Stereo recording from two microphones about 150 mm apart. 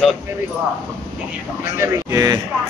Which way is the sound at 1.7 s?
20° right (ahead or behind).